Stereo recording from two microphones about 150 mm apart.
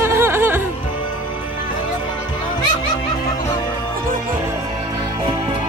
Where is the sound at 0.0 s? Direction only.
15° right (ahead or behind).